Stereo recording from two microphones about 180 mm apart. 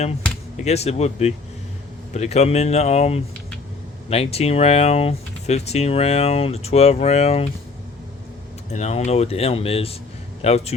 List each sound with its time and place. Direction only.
0.5 s speech: 35° left (ahead or behind)
8.7 s speech: 40° left (ahead or behind)